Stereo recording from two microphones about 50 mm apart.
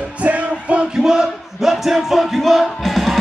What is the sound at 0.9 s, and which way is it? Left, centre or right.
Music, centre.